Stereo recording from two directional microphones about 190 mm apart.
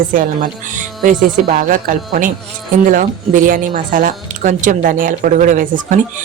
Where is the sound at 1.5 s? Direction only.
45° right (ahead or behind).